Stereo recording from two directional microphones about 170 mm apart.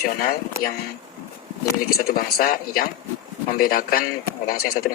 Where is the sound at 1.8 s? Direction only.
65° left (ahead or behind).